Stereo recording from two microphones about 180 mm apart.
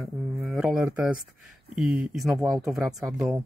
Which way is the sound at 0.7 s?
15° right (ahead or behind).